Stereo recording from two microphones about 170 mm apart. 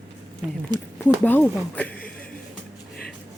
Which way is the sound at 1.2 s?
10° left (ahead or behind).